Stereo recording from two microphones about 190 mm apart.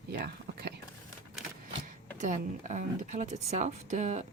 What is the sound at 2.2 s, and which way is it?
Speech, 40° right (ahead or behind).